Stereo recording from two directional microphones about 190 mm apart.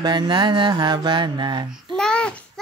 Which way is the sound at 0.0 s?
25° right (ahead or behind).